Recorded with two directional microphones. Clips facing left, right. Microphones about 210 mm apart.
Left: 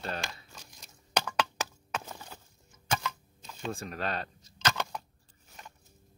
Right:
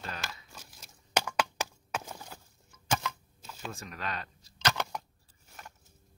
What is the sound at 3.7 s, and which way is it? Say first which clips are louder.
Speech: left 5 dB; 35° left (ahead or behind).